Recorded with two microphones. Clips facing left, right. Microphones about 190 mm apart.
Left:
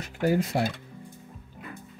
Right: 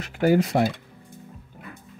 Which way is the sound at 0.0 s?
90° right.